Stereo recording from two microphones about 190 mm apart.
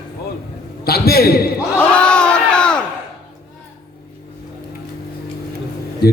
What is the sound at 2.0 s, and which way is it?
Crowd, 5° left (ahead or behind).